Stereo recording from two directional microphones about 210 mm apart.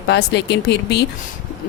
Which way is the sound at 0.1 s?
55° left (ahead or behind).